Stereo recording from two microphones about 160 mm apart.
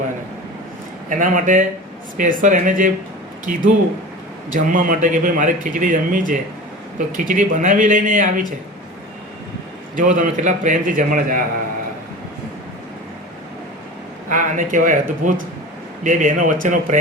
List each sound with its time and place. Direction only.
1.1 s a man's voice: 55° right (ahead or behind)
9.9 s a man's voice: 55° right (ahead or behind)
14.3 s a man's voice: 55° right (ahead or behind)